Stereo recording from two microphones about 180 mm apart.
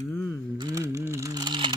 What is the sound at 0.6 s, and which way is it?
Computer keyboard, 20° right (ahead or behind).